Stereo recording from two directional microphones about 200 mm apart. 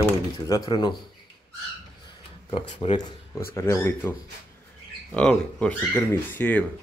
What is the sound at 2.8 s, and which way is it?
Speech, 25° left (ahead or behind).